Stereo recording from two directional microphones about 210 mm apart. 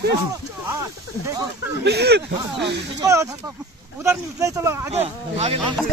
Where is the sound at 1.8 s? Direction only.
50° right (ahead or behind).